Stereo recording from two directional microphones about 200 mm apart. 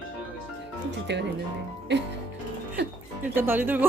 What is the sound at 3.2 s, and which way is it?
Speech, 10° right (ahead or behind).